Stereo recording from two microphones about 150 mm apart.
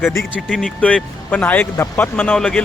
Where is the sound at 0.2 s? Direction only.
5° left (ahead or behind).